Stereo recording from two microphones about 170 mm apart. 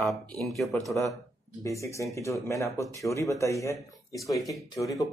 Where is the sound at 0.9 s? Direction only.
20° left (ahead or behind).